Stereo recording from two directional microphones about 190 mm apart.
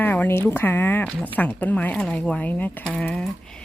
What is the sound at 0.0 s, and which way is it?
Speech, 10° left (ahead or behind).